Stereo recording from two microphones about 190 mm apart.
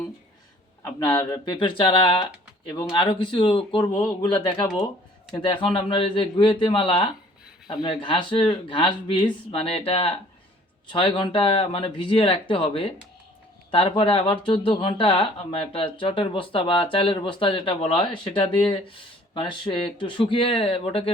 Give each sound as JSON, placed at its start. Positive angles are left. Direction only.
{"t": 1.1, "sound": "speech", "side_deg": 20}
{"t": 5.3, "sound": "speech", "side_deg": 25}